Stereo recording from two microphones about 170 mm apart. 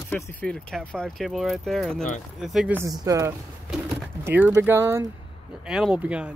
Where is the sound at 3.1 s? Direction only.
20° right (ahead or behind).